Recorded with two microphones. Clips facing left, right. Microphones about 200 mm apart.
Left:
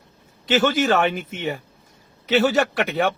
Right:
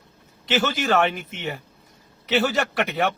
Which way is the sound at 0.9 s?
Centre (ahead or behind).